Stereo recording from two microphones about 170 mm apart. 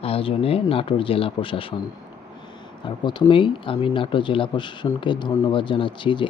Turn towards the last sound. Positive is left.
turn(degrees=30)  # may be behind; listen again after turning